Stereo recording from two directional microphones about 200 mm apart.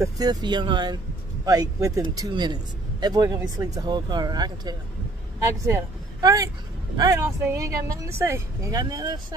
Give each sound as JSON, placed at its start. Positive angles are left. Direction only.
{"t": 0.0, "sound": "a woman's voice", "side_deg": -20}
{"t": 6.2, "sound": "a woman's voice", "side_deg": -15}